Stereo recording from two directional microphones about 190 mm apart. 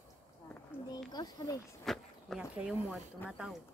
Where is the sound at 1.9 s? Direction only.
Centre (ahead or behind).